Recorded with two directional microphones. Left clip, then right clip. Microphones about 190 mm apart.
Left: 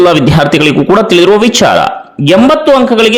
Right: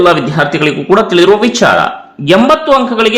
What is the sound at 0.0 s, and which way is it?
A man's voice, 40° left (ahead or behind).